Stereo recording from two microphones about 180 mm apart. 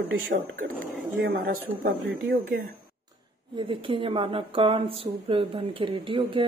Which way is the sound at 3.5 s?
30° right (ahead or behind).